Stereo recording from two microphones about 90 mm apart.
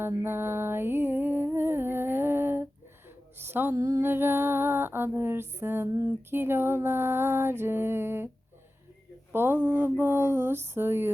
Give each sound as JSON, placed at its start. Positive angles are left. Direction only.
{"t": 0.0, "sound": "music", "side_deg": -25}
{"t": 3.8, "sound": "a sound", "side_deg": -40}
{"t": 4.0, "sound": "music", "side_deg": -25}
{"t": 9.3, "sound": "music", "side_deg": -25}